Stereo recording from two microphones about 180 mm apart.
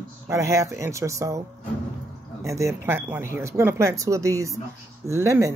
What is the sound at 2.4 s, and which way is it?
Speech, 15° right (ahead or behind).